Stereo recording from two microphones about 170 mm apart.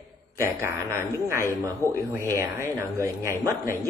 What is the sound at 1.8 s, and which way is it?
Speech, 20° left (ahead or behind).